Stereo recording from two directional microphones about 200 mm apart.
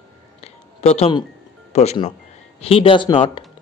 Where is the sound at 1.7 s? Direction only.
35° left (ahead or behind).